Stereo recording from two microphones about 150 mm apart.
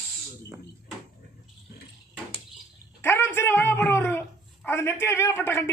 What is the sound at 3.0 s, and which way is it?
A man's voice, 15° left (ahead or behind).